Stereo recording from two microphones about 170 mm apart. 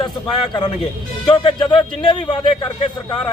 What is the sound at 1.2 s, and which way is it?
A man's voice, 35° left (ahead or behind).